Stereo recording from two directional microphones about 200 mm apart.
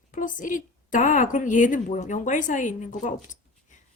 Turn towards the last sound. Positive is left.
turn(degrees=40)  # may be behind; listen again after turning